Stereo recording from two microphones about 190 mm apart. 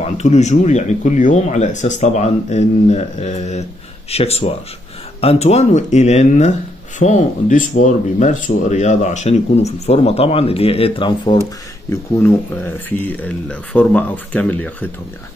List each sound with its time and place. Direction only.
0.0 s speech: 35° left (ahead or behind)
11.9 s speech: 15° left (ahead or behind)